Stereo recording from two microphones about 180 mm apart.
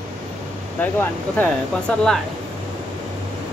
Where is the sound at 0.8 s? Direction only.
10° left (ahead or behind).